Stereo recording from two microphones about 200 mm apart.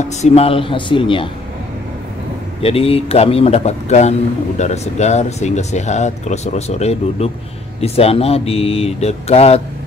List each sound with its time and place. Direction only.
0.2 s speech: 30° left (ahead or behind)
2.6 s speech: 30° left (ahead or behind)